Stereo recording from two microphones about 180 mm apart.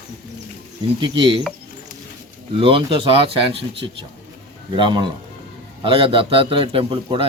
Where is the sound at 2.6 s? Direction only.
30° right (ahead or behind).